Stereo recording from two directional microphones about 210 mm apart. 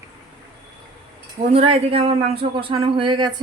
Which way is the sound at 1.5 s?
25° right (ahead or behind).